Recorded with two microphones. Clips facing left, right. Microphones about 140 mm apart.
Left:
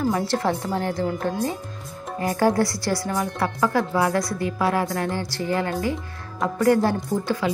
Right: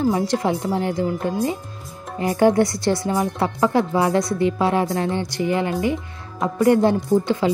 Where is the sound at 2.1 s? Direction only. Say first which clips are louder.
Right 4 dB; 20° right (ahead or behind).